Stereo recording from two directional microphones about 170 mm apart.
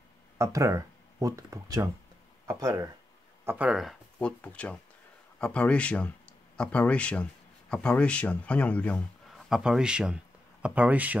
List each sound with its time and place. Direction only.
0.4 s speech: 20° right (ahead or behind)
3.4 s a man's voice: 5° right (ahead or behind)